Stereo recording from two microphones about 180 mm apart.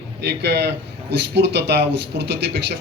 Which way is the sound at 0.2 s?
70° right (ahead or behind).